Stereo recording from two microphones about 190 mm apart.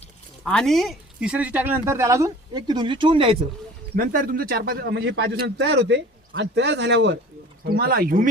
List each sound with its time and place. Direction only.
0.4 s speech: 5° left (ahead or behind); by 3.3 s 25° right (ahead or behind)
3.9 s a man's voice: 45° right (ahead or behind); by 7.2 s 65° right (ahead or behind)
7.6 s speech: 55° right (ahead or behind)